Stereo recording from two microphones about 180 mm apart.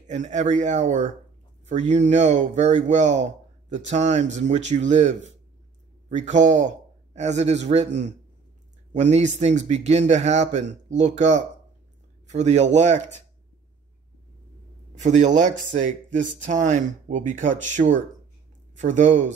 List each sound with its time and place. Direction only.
0.0 s speech: 40° right (ahead or behind)
15.0 s speech: 40° right (ahead or behind)